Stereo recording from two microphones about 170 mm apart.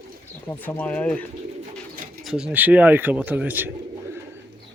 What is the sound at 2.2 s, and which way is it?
Speech, 5° right (ahead or behind).